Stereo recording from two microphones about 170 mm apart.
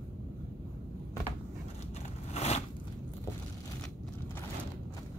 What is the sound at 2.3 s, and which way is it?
Biting, 40° left (ahead or behind).